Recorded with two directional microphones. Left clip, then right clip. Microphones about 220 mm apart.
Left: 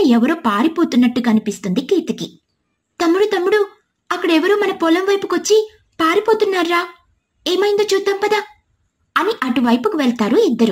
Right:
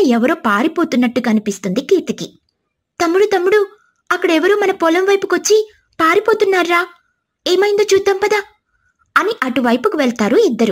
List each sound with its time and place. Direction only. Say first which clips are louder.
0.0 s a woman's voice: right 1 dB; 25° right (ahead or behind)
9.4 s a woman's voice: right 2 dB; 25° right (ahead or behind)